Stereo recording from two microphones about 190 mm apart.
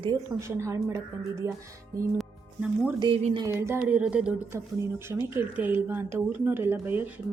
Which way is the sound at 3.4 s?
15° right (ahead or behind).